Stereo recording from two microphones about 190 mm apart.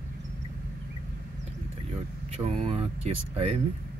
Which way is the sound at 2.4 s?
30° right (ahead or behind).